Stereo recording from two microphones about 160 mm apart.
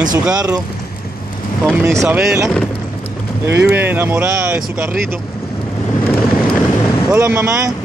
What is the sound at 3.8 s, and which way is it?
Speech, 15° right (ahead or behind).